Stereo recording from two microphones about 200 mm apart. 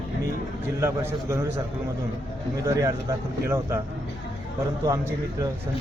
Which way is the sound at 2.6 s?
15° right (ahead or behind).